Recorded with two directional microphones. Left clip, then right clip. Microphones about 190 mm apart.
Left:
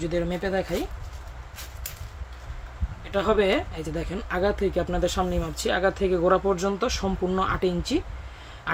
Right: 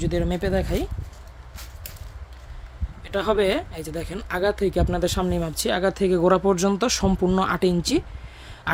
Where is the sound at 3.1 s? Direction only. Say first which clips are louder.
Right 1 dB; 50° right (ahead or behind).